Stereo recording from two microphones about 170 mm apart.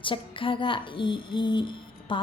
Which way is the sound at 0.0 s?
30° left (ahead or behind).